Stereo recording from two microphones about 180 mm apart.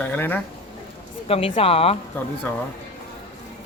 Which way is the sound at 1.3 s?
30° left (ahead or behind).